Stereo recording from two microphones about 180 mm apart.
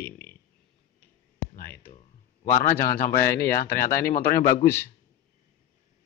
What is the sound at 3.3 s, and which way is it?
Speech, 15° left (ahead or behind).